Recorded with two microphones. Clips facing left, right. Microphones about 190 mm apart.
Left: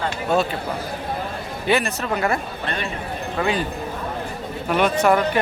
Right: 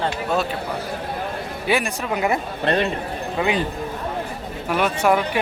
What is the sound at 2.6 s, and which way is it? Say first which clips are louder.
Speech: right 7 dB; 35° right (ahead or behind).